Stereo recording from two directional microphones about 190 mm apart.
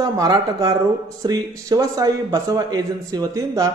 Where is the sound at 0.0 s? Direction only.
20° right (ahead or behind).